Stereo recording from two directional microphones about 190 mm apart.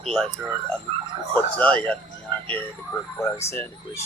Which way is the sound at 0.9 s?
35° right (ahead or behind).